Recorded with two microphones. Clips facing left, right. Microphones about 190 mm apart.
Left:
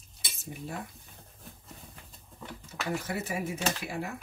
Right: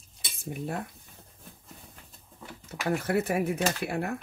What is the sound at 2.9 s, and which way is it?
Speech, 60° right (ahead or behind).